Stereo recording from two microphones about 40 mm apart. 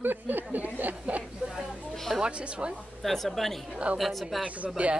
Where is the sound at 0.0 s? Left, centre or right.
Right.